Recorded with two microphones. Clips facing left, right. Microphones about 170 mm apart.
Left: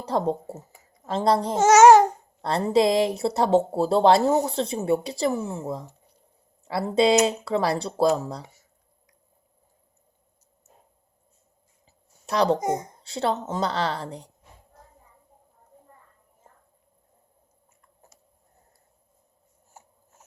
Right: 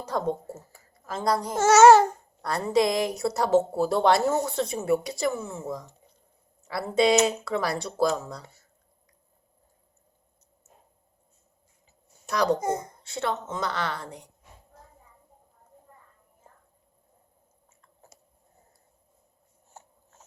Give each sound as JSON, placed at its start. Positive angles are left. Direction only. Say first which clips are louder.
{"t": 0.0, "sound": "speech", "louder": "left 3 dB", "side_deg": 30}
{"t": 0.5, "sound": "a woman's voice", "louder": "left 3 dB", "side_deg": 20}
{"t": 1.5, "sound": "a child's voice", "louder": "left 1 dB", "side_deg": 15}
{"t": 2.4, "sound": "speech", "louder": "left 3 dB", "side_deg": 30}
{"t": 12.2, "sound": "a child's voice", "louder": "left 2 dB", "side_deg": 30}
{"t": 12.5, "sound": "speech", "louder": "left 2 dB", "side_deg": 20}
{"t": 13.0, "sound": "a woman's voice", "louder": "left 4 dB", "side_deg": 30}
{"t": 19.8, "sound": "a sound", "louder": "right 2 dB", "side_deg": 10}